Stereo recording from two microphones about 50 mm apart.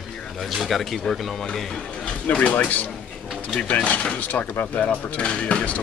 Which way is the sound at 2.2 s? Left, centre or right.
Left.